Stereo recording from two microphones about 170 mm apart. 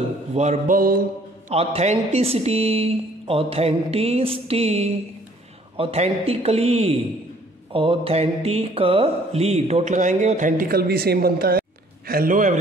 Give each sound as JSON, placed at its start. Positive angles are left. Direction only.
{"t": 0.3, "sound": "speech", "side_deg": -40}
{"t": 0.7, "sound": "music", "side_deg": -60}
{"t": 1.5, "sound": "a man's voice", "side_deg": -35}